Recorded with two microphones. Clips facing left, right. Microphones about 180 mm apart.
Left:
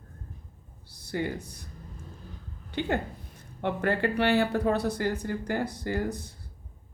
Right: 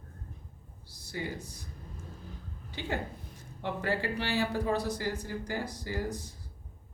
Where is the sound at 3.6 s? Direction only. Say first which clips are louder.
Left 5 dB; 60° left (ahead or behind).